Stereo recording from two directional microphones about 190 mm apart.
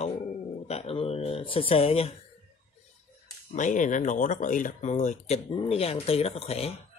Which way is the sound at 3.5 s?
40° left (ahead or behind).